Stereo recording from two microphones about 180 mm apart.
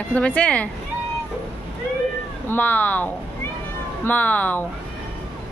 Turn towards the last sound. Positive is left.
turn(degrees=10)  # may be behind; listen again after turning